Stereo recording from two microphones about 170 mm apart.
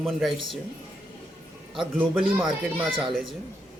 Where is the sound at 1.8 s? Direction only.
5° right (ahead or behind).